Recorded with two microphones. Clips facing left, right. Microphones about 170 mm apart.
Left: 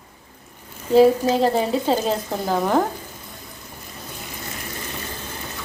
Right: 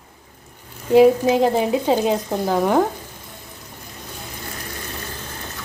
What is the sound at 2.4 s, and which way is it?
Speech, 5° right (ahead or behind).